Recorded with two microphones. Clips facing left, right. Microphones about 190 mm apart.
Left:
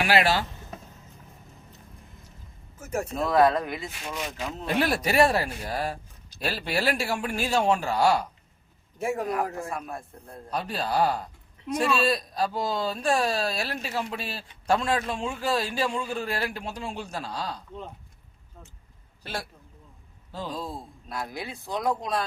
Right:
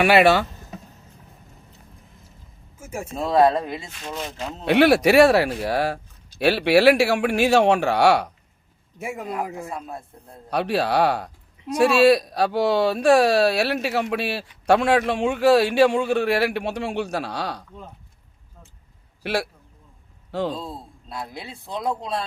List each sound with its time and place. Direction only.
0.0 s speech: 65° right (ahead or behind)
2.7 s a sound: 10° right (ahead or behind)
3.2 s speech: 25° right (ahead or behind)
4.6 s a man's voice: 75° right (ahead or behind)
9.2 s speech: 25° right (ahead or behind)
10.5 s a man's voice: 75° right (ahead or behind)
19.2 s a man's voice: 75° right (ahead or behind)
20.5 s speech: 25° right (ahead or behind)